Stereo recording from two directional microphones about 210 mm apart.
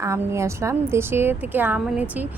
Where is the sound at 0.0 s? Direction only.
15° right (ahead or behind).